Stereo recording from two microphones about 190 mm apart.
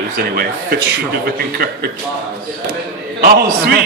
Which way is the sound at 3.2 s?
55° right (ahead or behind).